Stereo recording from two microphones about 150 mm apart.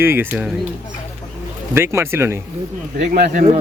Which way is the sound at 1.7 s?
15° right (ahead or behind).